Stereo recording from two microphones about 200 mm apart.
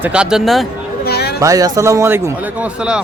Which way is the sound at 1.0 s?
55° left (ahead or behind).